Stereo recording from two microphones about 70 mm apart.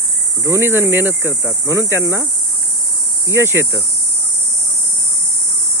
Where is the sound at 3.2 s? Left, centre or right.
Right.